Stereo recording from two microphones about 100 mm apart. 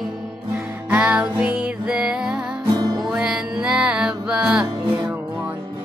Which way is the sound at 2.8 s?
45° right (ahead or behind).